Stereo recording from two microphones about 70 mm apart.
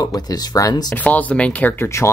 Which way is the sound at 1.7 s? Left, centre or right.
Left.